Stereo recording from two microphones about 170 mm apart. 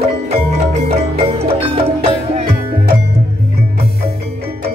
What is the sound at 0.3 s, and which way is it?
Music, 40° right (ahead or behind).